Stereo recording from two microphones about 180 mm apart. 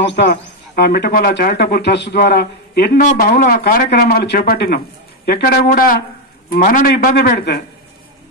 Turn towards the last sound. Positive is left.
turn(degrees=65)  # may be behind; listen again after turning